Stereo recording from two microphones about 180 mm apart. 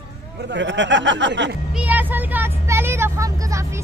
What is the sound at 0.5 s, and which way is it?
Speech, 85° right.